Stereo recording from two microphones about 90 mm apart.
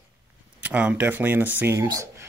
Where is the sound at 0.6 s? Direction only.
15° right (ahead or behind).